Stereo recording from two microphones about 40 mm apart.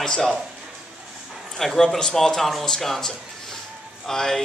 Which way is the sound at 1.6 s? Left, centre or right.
Centre.